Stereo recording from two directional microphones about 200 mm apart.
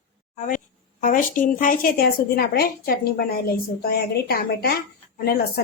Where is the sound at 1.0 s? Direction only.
40° left (ahead or behind).